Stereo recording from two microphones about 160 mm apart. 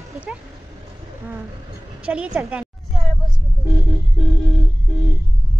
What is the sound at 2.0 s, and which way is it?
Speech, 5° right (ahead or behind).